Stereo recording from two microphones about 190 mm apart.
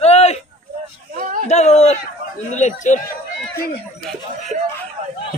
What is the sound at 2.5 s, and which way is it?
Speech, 40° left (ahead or behind).